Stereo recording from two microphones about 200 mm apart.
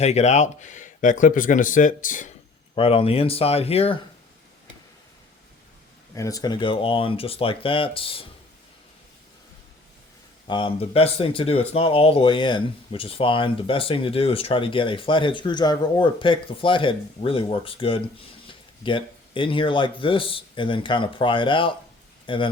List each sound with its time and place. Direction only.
0.0 s speech: 35° left (ahead or behind)
2.7 s speech: 30° left (ahead or behind)
6.1 s speech: 15° left (ahead or behind)
10.4 s speech: 25° left (ahead or behind)